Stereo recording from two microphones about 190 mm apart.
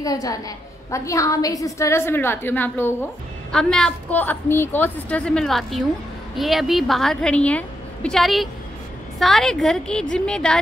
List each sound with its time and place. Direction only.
0.0 s a woman's voice: 20° left (ahead or behind)